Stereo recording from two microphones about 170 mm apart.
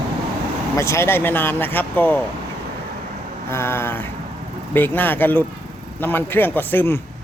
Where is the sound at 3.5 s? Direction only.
15° left (ahead or behind).